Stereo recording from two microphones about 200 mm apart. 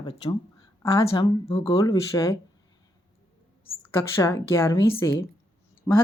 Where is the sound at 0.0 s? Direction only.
25° left (ahead or behind).